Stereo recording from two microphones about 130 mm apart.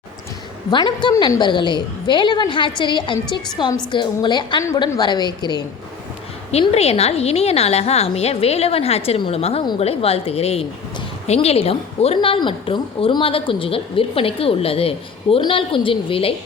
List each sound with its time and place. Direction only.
0.7 s a woman's voice: 40° left (ahead or behind)
6.5 s a woman's voice: 50° left (ahead or behind)